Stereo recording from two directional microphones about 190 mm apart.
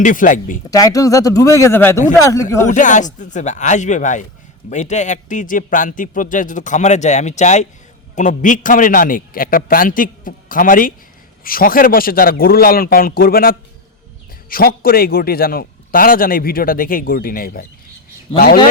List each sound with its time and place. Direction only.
0.0 s a man's voice: 45° left (ahead or behind)
0.7 s speech: 20° left (ahead or behind)
2.6 s a man's voice: 40° left (ahead or behind)